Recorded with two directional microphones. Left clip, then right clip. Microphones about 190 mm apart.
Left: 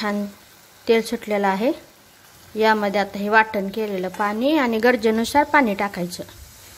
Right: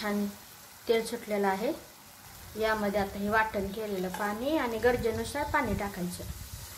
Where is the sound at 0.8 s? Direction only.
40° left (ahead or behind).